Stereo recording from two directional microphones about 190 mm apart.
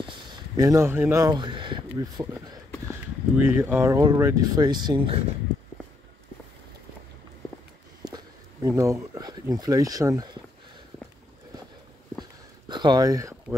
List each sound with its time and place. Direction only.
0.6 s speech: 15° right (ahead or behind)
3.3 s speech: 10° right (ahead or behind)
8.0 s a sound: 20° right (ahead or behind)
8.6 s speech: 15° right (ahead or behind)
12.6 s speech: 25° right (ahead or behind)